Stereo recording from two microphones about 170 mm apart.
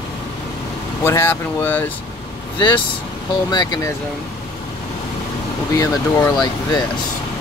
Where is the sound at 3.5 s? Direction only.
25° left (ahead or behind).